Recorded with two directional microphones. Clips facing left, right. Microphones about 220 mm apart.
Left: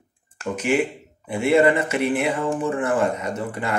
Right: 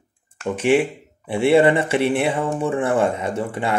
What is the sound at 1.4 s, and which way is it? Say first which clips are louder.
Speech: right 2 dB; 30° right (ahead or behind).